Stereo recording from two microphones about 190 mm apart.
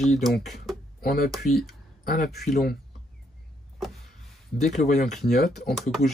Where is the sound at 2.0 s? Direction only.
50° left (ahead or behind).